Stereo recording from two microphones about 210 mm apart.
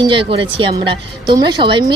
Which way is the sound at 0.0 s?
25° right (ahead or behind).